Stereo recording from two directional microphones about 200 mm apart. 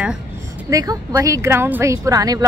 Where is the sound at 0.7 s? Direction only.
15° right (ahead or behind).